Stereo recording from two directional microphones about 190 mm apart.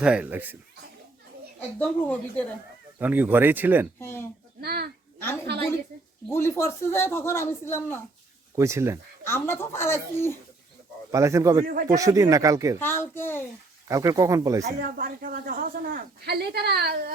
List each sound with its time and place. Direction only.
0.0 s speech: 5° right (ahead or behind)
1.8 s speech: 5° left (ahead or behind)
3.0 s speech: 10° right (ahead or behind)
4.0 s speech: 10° left (ahead or behind)
4.6 s speech: 55° right (ahead or behind)
5.2 s speech: 10° left (ahead or behind)
8.5 s speech: 15° right (ahead or behind)
9.2 s speech: 15° left (ahead or behind)
11.1 s speech: 15° right (ahead or behind)
11.6 s speech: 45° right (ahead or behind)
11.9 s speech: 15° right (ahead or behind)
12.8 s speech: 10° left (ahead or behind)
13.8 s speech: 15° right (ahead or behind)
14.6 s speech: 45° right (ahead or behind)